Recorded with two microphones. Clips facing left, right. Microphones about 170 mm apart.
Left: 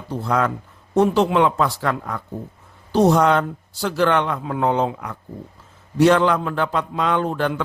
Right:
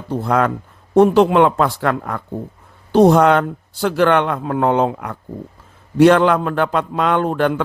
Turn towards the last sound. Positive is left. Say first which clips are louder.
# right 4 dB
turn(degrees=-60)  # may be behind; listen again after turning